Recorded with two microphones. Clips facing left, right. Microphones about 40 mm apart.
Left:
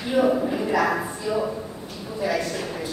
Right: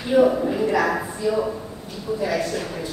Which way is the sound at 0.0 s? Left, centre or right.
Centre.